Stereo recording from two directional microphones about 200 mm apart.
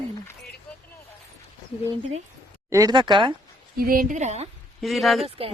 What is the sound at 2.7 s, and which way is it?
Speech, 15° right (ahead or behind).